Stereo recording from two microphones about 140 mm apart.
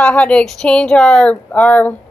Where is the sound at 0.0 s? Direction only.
5° left (ahead or behind).